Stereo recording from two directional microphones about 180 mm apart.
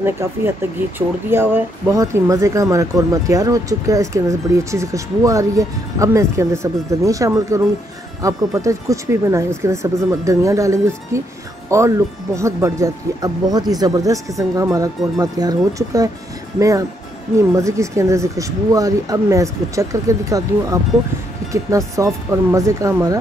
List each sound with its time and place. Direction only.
0.9 s speech: 10° right (ahead or behind)
21.5 s speech: 15° right (ahead or behind)